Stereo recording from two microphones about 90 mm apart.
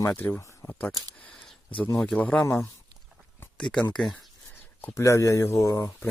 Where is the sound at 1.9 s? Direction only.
5° left (ahead or behind).